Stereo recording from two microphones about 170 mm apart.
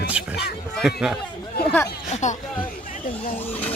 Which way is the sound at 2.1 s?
45° left (ahead or behind).